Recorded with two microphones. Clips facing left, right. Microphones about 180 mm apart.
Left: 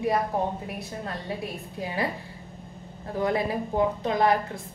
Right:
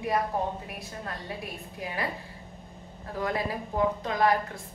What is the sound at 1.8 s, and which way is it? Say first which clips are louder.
Speech: left 4 dB; 30° left (ahead or behind).